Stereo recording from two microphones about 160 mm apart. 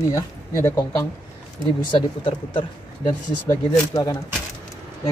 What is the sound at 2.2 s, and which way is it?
Speech, 35° left (ahead or behind).